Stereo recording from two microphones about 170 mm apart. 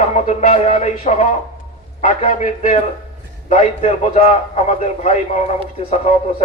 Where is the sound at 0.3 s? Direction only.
45° left (ahead or behind).